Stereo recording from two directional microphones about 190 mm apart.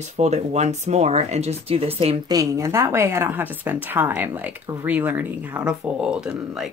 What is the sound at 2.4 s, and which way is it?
Speech, 15° right (ahead or behind).